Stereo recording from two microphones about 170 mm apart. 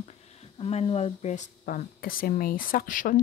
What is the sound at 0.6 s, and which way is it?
Speech, 35° left (ahead or behind).